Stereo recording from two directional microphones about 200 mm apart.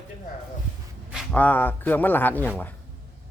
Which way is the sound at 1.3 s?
10° left (ahead or behind).